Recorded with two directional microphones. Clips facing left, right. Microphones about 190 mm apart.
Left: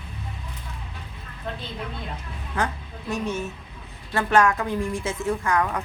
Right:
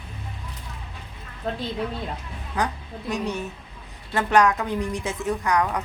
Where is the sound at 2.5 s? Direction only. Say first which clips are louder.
Right 1 dB; 15° right (ahead or behind).